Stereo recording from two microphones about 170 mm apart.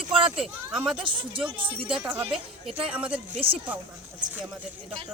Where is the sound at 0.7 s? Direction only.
5° right (ahead or behind).